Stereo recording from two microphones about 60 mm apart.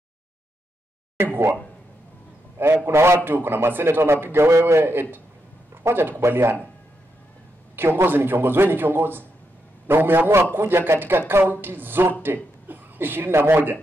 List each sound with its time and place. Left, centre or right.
1.1 s speech: right
2.6 s a man's voice: right
5.9 s a man's voice: right
7.7 s a man's voice: right